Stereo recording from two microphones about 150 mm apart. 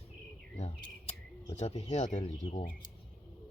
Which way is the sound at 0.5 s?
45° left (ahead or behind).